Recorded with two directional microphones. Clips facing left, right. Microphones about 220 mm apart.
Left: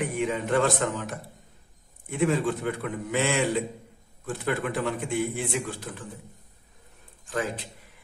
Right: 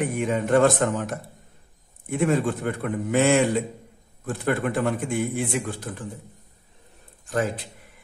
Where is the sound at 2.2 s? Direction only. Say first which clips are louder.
Right 2 dB; 50° right (ahead or behind).